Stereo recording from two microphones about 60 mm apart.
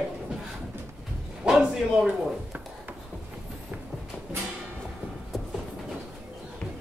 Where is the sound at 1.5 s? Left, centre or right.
Centre.